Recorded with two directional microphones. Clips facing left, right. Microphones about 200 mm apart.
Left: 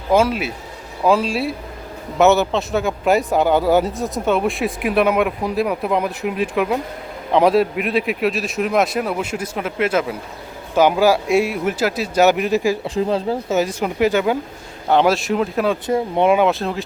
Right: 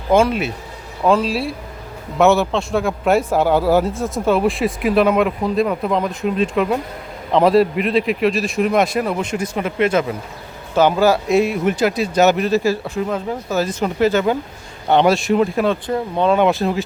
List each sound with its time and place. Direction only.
0.1 s a man's voice: 5° left (ahead or behind)
13.0 s speech: 30° left (ahead or behind)
13.6 s speech: 10° left (ahead or behind)
14.8 s a man's voice: centre (ahead or behind)
15.9 s speech: 20° left (ahead or behind)
16.3 s a man's voice: centre (ahead or behind)